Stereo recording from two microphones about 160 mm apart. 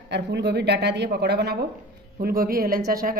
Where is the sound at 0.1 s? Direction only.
90° right.